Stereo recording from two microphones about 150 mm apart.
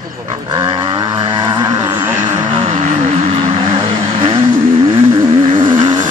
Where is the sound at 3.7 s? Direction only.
35° right (ahead or behind).